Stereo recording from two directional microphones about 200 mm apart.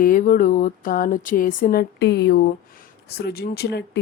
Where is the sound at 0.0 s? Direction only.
45° left (ahead or behind).